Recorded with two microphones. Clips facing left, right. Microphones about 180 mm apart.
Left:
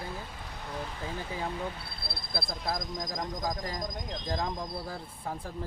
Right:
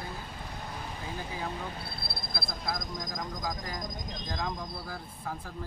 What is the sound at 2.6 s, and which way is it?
Speech, 35° left (ahead or behind).